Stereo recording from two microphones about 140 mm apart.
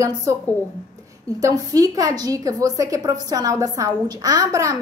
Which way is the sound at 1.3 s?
25° right (ahead or behind).